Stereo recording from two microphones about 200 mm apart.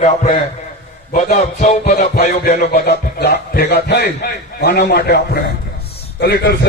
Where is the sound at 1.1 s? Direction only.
40° left (ahead or behind).